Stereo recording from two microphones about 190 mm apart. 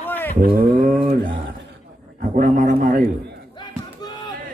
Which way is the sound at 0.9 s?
30° right (ahead or behind).